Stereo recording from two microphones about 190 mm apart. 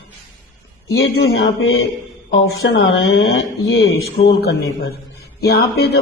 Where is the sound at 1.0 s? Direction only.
60° left (ahead or behind).